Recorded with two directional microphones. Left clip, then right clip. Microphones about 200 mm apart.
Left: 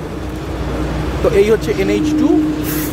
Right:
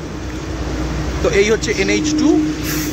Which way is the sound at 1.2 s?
Centre (ahead or behind).